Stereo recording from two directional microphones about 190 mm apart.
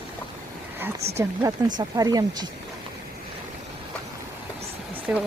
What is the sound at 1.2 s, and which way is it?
Speech, 15° right (ahead or behind).